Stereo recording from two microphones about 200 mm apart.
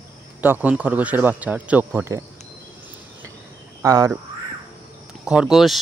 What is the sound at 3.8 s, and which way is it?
Speech, 15° right (ahead or behind).